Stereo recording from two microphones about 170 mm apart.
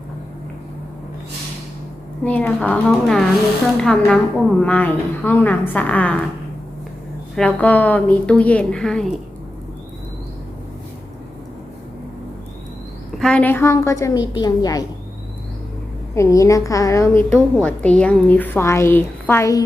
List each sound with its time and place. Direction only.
2.2 s a woman's voice: 10° left (ahead or behind)
7.3 s a woman's voice: 5° left (ahead or behind)
13.1 s a woman's voice: 5° left (ahead or behind); by 14.8 s 20° left (ahead or behind)
16.1 s a woman's voice: 20° left (ahead or behind)
17.3 s a woman's voice: 5° left (ahead or behind)